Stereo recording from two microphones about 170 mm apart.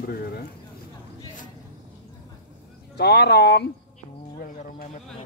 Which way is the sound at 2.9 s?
75° left (ahead or behind).